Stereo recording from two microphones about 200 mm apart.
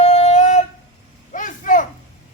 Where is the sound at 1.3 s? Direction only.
40° left (ahead or behind).